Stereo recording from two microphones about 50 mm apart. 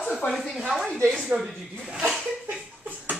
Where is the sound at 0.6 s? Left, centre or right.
Centre.